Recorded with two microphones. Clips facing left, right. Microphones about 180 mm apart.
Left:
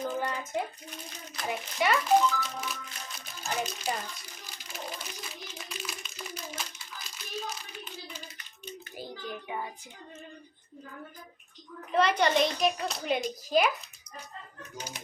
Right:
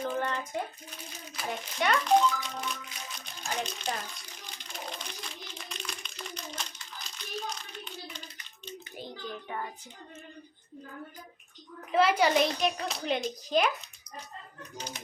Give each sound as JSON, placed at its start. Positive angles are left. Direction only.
{"t": 0.2, "sound": "child singing", "side_deg": 10}
{"t": 1.5, "sound": "a child's voice", "side_deg": 5}
{"t": 3.2, "sound": "a sound", "side_deg": 5}
{"t": 9.0, "sound": "child singing", "side_deg": 10}
{"t": 11.9, "sound": "a child's voice", "side_deg": -5}
{"t": 14.8, "sound": "child singing", "side_deg": 10}